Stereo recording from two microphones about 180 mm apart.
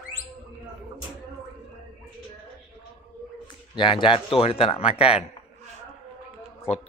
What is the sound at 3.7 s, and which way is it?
Speech, 25° left (ahead or behind).